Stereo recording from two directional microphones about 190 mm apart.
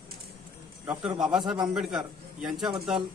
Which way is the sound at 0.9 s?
5° right (ahead or behind).